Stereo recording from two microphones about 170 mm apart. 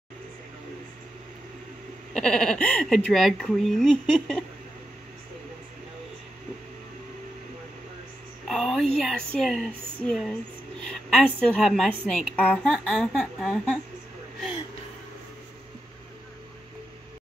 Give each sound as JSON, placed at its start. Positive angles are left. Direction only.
{"t": 2.1, "sound": "a woman's voice", "side_deg": 5}
{"t": 8.5, "sound": "a woman's voice", "side_deg": 5}
{"t": 11.3, "sound": "a woman's voice", "side_deg": 5}